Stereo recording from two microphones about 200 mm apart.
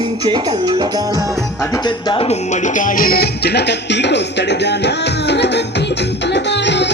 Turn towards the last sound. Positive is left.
turn(degrees=60)  # may be behind; listen again after turning